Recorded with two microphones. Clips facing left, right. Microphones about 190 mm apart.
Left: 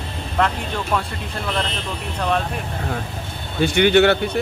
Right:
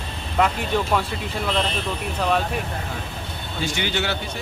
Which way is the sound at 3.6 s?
60° left (ahead or behind).